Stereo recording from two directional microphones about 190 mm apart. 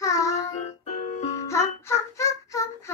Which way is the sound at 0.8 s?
35° left (ahead or behind).